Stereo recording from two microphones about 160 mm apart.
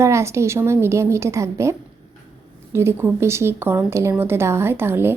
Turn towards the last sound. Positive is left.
turn(degrees=-15)  # may be behind; listen again after turning